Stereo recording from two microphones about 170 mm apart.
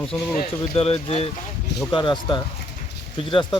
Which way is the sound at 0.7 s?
35° left (ahead or behind).